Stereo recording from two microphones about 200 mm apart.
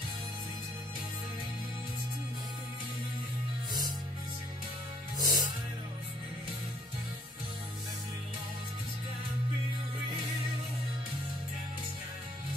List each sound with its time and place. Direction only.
5.1 s music: 20° right (ahead or behind)